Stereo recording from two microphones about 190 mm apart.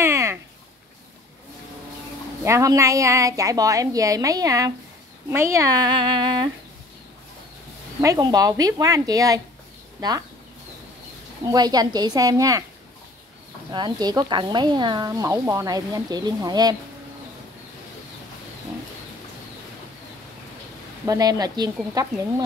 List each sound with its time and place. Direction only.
0.0 s a sound: 15° right (ahead or behind)
2.4 s a woman's voice: 15° right (ahead or behind)
8.0 s speech: 20° right (ahead or behind)
11.4 s speech: 20° right (ahead or behind)
13.7 s speech: 25° right (ahead or behind)
21.0 s speech: 20° right (ahead or behind)